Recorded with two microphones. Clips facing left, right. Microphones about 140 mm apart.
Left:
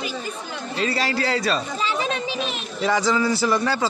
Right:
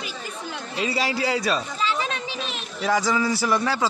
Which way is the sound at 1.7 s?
20° left (ahead or behind).